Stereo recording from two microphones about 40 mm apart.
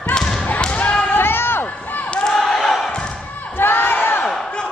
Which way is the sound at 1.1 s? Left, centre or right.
Left.